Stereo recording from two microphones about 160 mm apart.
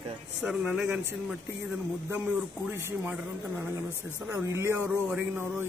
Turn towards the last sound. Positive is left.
turn(degrees=-15)  # may be behind; listen again after turning